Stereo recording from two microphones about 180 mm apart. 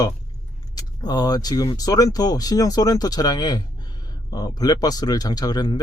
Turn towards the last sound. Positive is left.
turn(degrees=20)  # may be behind; listen again after turning